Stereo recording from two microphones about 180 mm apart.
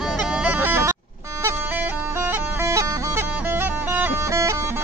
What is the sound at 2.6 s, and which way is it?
Music, 15° right (ahead or behind).